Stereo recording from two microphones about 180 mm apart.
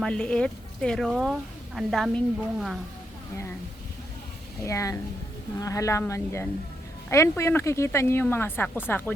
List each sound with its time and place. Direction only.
0.0 s speech: 5° left (ahead or behind)
4.6 s speech: 15° left (ahead or behind)